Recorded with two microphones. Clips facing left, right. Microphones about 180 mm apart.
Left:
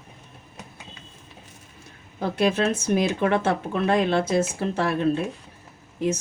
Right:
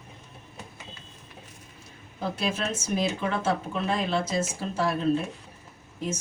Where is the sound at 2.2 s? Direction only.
60° left (ahead or behind).